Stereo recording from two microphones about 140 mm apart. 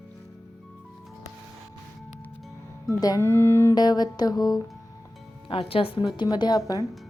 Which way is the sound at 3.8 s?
30° left (ahead or behind).